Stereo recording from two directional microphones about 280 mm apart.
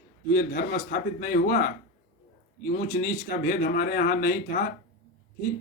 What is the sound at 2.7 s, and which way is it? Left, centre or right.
Speech, left.